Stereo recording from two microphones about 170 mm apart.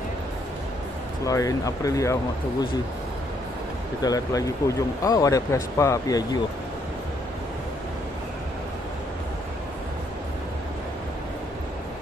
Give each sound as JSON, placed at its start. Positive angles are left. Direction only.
{"t": 1.2, "sound": "speech", "side_deg": 20}
{"t": 4.0, "sound": "speech", "side_deg": 20}